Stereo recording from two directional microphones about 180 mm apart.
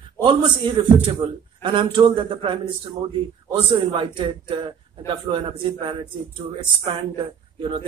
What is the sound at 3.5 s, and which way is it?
A man's voice, 30° right (ahead or behind).